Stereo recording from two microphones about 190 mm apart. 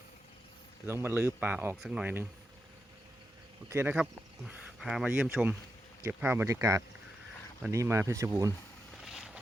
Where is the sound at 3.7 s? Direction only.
10° right (ahead or behind).